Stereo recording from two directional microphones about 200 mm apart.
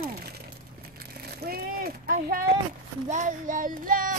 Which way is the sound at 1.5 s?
45° right (ahead or behind).